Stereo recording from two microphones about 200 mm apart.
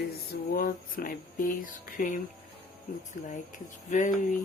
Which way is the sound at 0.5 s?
45° left (ahead or behind).